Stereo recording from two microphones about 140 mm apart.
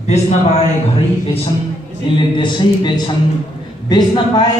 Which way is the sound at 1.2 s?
40° left (ahead or behind).